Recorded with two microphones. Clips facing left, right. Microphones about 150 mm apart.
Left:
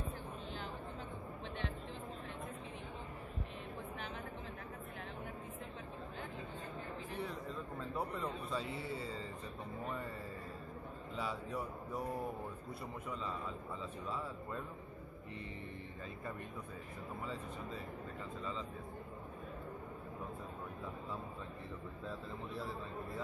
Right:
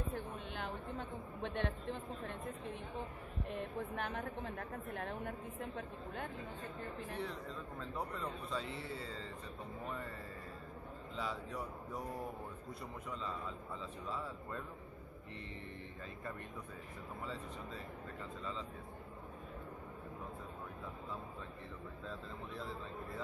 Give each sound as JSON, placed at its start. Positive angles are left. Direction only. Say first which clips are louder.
{"t": 0.1, "sound": "a sound", "louder": "right 2 dB", "side_deg": -60}
{"t": 3.5, "sound": "a woman's voice", "louder": "right 5 dB", "side_deg": -55}
{"t": 7.2, "sound": "a man's voice", "louder": "left 3 dB", "side_deg": 5}
{"t": 11.1, "sound": "a man's voice", "louder": "left 1 dB", "side_deg": 5}
{"t": 14.0, "sound": "a man's voice", "louder": "even", "side_deg": 0}